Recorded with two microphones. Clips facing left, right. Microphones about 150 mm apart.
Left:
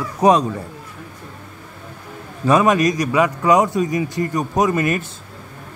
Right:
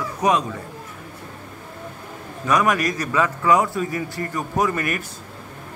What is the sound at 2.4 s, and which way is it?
A man's voice, 25° left (ahead or behind).